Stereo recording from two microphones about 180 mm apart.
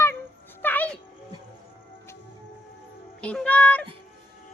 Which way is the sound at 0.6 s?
10° left (ahead or behind).